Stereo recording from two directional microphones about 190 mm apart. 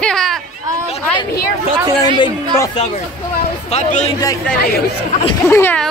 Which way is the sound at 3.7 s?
35° left (ahead or behind).